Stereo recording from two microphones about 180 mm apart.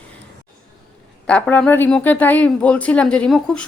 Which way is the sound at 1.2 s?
5° left (ahead or behind).